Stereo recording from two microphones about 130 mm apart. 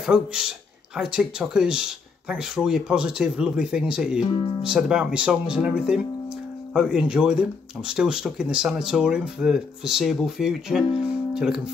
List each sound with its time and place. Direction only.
0.0 s speech: 5° right (ahead or behind)
4.2 s speech: 40° left (ahead or behind)
4.6 s speech: 5° right (ahead or behind)